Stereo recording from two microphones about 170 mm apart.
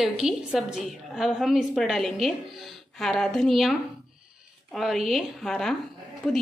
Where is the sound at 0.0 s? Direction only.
Centre (ahead or behind).